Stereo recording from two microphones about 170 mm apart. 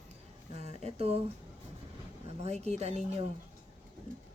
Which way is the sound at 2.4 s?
40° right (ahead or behind).